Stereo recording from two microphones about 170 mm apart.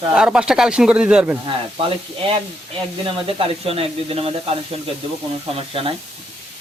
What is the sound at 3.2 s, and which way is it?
Speech, 35° right (ahead or behind).